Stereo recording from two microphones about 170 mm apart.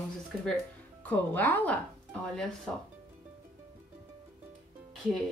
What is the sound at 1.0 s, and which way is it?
A woman's voice, 10° left (ahead or behind).